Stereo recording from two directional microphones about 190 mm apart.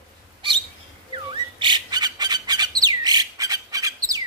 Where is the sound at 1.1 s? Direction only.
25° right (ahead or behind).